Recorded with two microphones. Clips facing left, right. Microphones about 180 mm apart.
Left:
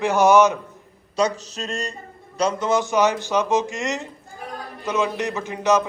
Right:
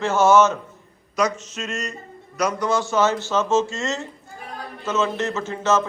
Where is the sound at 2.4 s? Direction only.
25° left (ahead or behind).